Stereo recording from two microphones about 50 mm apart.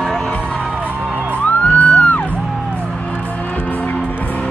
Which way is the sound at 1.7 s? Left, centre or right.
Left.